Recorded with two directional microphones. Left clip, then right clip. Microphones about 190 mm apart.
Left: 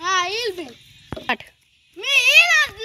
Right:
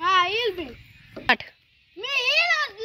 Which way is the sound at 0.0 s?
5° left (ahead or behind).